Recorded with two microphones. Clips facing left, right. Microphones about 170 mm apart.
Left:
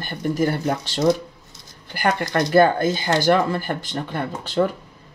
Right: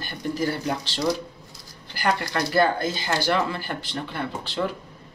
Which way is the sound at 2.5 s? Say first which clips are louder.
Left 6 dB; 50° left (ahead or behind).